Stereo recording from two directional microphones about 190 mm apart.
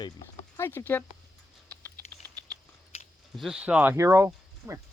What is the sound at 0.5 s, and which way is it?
Speech, 15° left (ahead or behind).